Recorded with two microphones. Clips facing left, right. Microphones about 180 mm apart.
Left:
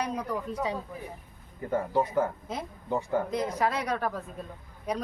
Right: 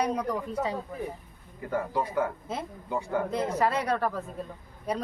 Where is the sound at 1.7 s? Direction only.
20° left (ahead or behind).